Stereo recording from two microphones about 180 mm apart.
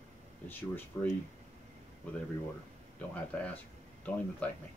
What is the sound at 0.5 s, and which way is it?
Speech, 10° left (ahead or behind).